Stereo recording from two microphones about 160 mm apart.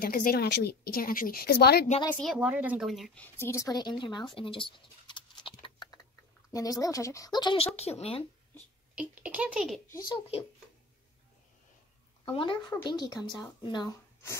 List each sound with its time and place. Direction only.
0.0 s a woman's voice: 65° left (ahead or behind); by 1.9 s 85° left
2.3 s a child's voice: 10° right (ahead or behind)
3.2 s speech: 15° left (ahead or behind)
4.4 s patter: 35° left (ahead or behind)
6.5 s speech: 20° left (ahead or behind); by 8.3 s 40° left (ahead or behind)
8.9 s a child's voice: 10° right (ahead or behind)
12.3 s speech: 30° left (ahead or behind)